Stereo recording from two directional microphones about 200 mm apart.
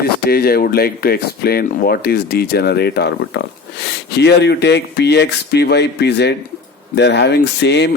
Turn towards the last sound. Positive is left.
turn(degrees=60)  # may be behind; listen again after turning